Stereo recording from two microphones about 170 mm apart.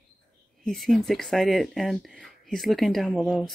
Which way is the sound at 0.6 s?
Centre (ahead or behind).